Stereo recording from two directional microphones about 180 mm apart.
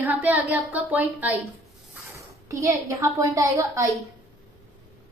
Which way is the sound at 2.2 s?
15° right (ahead or behind).